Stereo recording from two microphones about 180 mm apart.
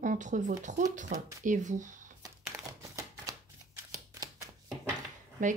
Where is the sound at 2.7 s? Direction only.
15° right (ahead or behind).